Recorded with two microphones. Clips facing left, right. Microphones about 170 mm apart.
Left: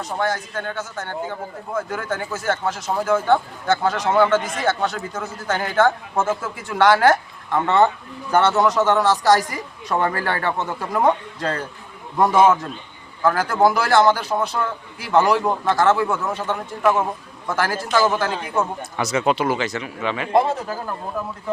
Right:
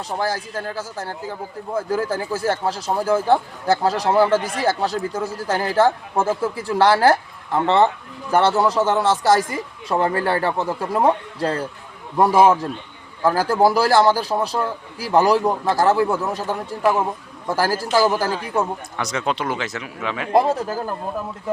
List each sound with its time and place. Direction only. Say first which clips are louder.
0.0 s a man's voice: even; 30° right (ahead or behind)
18.8 s speech: left 4 dB; 5° left (ahead or behind)
20.3 s a man's voice: right 2 dB; 35° right (ahead or behind)